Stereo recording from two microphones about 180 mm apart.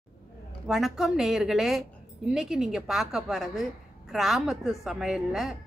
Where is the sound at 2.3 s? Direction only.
Centre (ahead or behind).